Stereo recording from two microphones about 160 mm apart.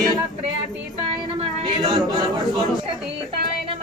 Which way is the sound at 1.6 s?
30° right (ahead or behind).